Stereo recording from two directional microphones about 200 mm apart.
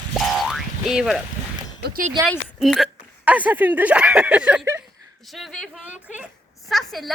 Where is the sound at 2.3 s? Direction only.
Centre (ahead or behind).